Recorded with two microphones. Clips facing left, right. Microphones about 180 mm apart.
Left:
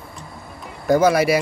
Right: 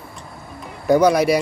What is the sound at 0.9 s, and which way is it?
Speech, 5° left (ahead or behind).